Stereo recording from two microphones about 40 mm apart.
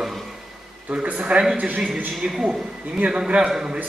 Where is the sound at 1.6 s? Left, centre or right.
Right.